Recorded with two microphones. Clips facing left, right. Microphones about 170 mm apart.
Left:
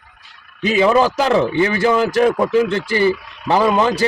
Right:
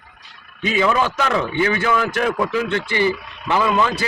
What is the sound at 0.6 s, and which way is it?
A man's voice, 35° left (ahead or behind).